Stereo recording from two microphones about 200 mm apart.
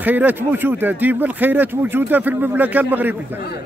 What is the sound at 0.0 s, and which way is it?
Speech, 10° right (ahead or behind).